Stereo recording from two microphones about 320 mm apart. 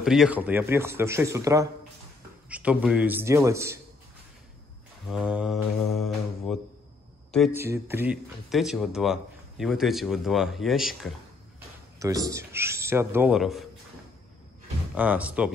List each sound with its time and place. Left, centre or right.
0.0 s a man's voice: centre
5.1 s mantra: centre
7.3 s a man's voice: centre
15.0 s speech: centre